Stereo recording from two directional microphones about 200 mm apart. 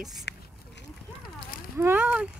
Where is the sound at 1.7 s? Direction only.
10° right (ahead or behind).